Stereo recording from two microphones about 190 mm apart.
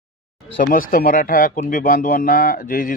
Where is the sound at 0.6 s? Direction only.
45° left (ahead or behind).